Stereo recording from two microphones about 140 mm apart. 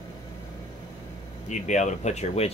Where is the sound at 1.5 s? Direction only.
60° left (ahead or behind).